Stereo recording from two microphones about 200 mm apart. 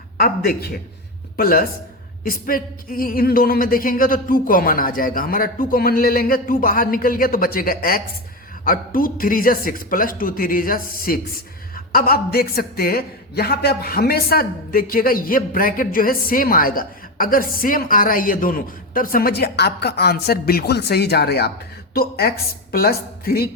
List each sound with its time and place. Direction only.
0.2 s a man's voice: 50° left (ahead or behind)